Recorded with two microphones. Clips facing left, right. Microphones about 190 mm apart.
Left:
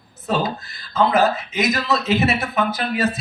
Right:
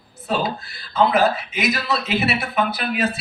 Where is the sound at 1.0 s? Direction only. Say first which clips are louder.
Even; 40° left (ahead or behind).